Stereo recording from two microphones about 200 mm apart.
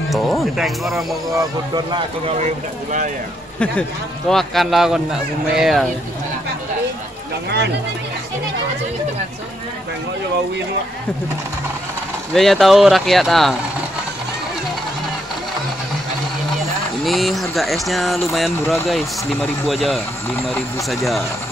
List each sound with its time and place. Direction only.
0.1 s speech: centre (ahead or behind)
1.3 s speech: 20° right (ahead or behind); by 3.1 s 35° right (ahead or behind)
4.3 s speech: centre (ahead or behind)
12.4 s speech: centre (ahead or behind)
17.0 s speech: centre (ahead or behind)